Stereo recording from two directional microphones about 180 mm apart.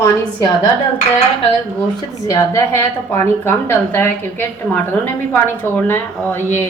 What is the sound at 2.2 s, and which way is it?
A woman's voice, 15° left (ahead or behind).